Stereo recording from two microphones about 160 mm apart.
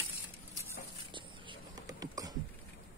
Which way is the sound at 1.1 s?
25° right (ahead or behind).